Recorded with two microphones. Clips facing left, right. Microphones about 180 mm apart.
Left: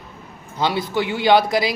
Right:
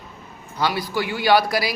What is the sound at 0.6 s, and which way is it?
Speech, 25° left (ahead or behind).